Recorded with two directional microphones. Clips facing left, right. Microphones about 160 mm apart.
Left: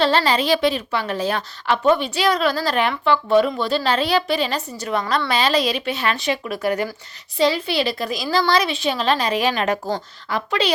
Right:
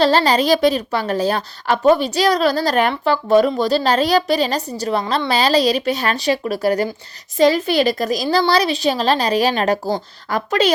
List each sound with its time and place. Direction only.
0.0 s a woman's voice: 40° right (ahead or behind)
7.3 s a woman's voice: 45° right (ahead or behind)